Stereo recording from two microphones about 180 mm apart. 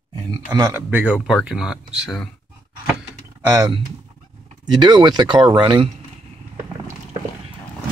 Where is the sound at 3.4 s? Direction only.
15° right (ahead or behind).